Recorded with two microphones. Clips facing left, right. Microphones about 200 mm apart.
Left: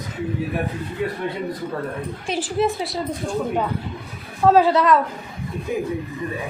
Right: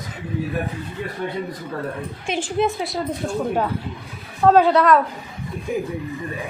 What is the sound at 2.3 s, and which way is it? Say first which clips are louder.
Speech: even; centre (ahead or behind).